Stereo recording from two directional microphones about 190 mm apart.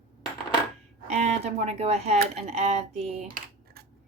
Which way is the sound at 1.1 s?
35° right (ahead or behind).